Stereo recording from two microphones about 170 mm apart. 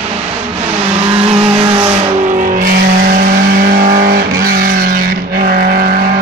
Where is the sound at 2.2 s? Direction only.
50° right (ahead or behind).